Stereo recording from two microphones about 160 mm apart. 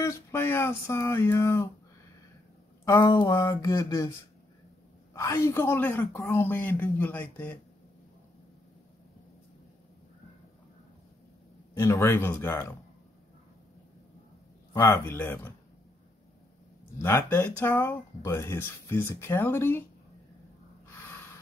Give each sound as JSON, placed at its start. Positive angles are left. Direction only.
{"t": 0.0, "sound": "speech", "side_deg": 15}
{"t": 2.8, "sound": "speech", "side_deg": 20}
{"t": 5.1, "sound": "speech", "side_deg": 20}
{"t": 11.7, "sound": "speech", "side_deg": 15}
{"t": 14.7, "sound": "speech", "side_deg": 15}
{"t": 17.0, "sound": "speech", "side_deg": 15}